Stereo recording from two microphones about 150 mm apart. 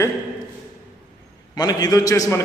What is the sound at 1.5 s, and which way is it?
Speech, 25° left (ahead or behind).